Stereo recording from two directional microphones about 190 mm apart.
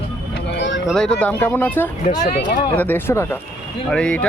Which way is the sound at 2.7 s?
10° left (ahead or behind).